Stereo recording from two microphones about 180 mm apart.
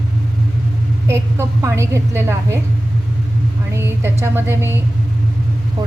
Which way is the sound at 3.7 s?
15° right (ahead or behind).